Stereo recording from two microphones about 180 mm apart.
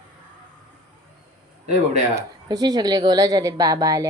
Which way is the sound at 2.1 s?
20° right (ahead or behind).